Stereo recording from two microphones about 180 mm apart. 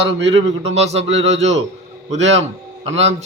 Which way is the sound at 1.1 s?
90° right.